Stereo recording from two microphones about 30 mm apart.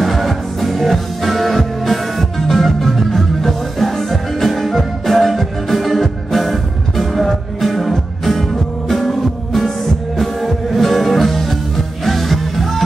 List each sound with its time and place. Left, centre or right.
0.0 s music: centre